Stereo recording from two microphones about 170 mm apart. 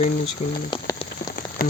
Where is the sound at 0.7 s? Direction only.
30° left (ahead or behind).